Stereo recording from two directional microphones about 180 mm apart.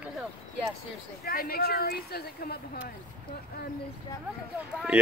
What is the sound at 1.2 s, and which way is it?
Speech, 55° left (ahead or behind).